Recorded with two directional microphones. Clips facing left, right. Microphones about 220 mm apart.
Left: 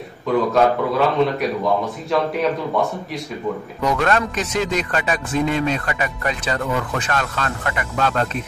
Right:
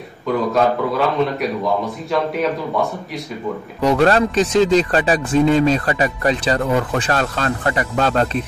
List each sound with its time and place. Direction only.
0.5 s speech: centre (ahead or behind)
3.8 s speech: 30° right (ahead or behind)